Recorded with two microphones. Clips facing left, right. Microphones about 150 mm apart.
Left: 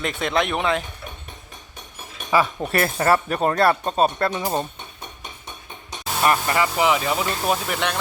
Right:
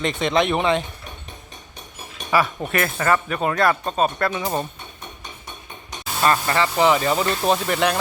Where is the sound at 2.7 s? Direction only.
35° left (ahead or behind).